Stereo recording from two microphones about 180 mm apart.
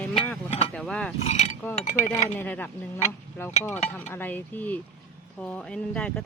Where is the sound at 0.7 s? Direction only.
5° left (ahead or behind).